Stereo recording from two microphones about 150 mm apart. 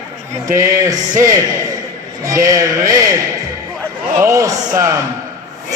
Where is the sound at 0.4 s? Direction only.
20° right (ahead or behind).